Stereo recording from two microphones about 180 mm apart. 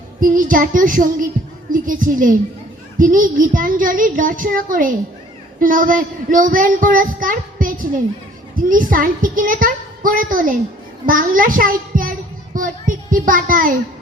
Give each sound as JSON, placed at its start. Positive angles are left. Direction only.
{"t": 0.2, "sound": "child singing", "side_deg": -50}
{"t": 1.7, "sound": "a woman's voice", "side_deg": -50}